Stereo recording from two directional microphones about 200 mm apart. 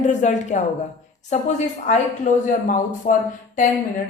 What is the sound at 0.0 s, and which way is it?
Speech, 35° left (ahead or behind).